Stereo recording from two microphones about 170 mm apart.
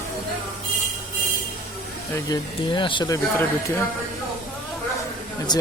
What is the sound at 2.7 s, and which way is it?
Speech, 30° left (ahead or behind).